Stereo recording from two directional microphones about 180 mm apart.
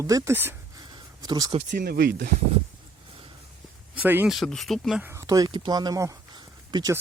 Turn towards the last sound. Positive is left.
turn(degrees=-20)  # may be behind; listen again after turning